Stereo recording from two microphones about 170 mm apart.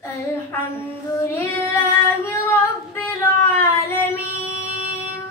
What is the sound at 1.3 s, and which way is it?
Female singing, 15° left (ahead or behind).